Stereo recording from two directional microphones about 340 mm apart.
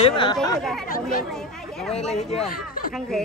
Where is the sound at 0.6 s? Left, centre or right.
Centre.